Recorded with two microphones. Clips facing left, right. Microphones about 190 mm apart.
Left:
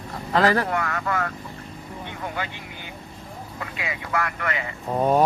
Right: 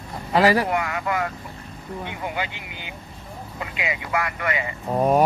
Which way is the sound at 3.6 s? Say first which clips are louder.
Right 3 dB; 15° right (ahead or behind).